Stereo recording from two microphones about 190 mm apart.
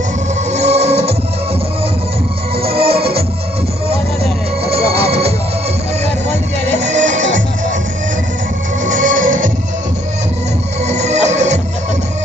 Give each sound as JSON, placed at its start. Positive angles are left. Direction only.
{"t": 0.5, "sound": "music", "side_deg": -35}
{"t": 2.5, "sound": "music", "side_deg": -30}
{"t": 6.8, "sound": "music", "side_deg": -40}
{"t": 8.8, "sound": "music", "side_deg": -45}
{"t": 10.9, "sound": "music", "side_deg": -35}